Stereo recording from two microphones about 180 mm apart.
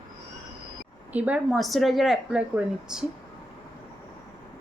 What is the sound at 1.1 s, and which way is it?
A woman's voice, 10° right (ahead or behind).